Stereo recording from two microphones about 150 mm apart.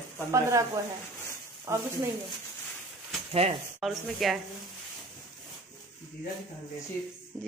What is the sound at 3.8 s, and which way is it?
Speech, centre (ahead or behind).